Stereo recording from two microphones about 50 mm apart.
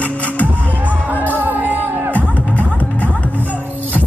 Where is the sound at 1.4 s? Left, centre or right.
Right.